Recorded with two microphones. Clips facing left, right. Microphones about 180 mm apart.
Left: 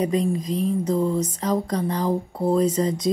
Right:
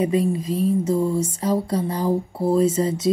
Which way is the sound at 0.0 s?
5° right (ahead or behind).